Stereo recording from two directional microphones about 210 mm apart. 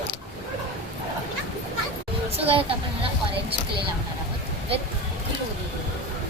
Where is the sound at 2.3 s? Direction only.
30° right (ahead or behind).